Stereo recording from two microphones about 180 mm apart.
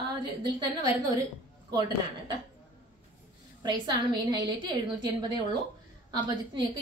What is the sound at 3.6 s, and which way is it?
A woman's voice, 25° right (ahead or behind).